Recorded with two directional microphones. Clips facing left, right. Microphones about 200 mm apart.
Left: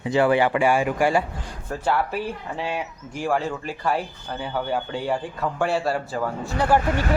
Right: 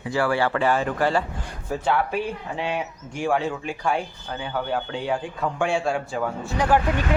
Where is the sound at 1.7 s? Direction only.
5° right (ahead or behind).